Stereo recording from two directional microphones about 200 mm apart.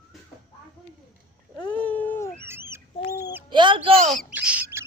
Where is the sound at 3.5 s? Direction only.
25° right (ahead or behind).